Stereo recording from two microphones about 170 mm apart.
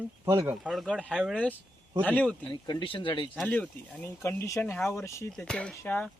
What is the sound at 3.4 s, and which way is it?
Speech, 5° left (ahead or behind).